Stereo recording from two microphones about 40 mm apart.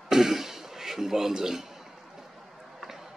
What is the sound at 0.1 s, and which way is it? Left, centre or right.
Throat clearing, centre.